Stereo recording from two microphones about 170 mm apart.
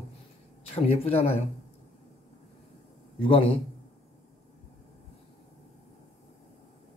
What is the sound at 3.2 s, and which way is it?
Speech, 35° left (ahead or behind).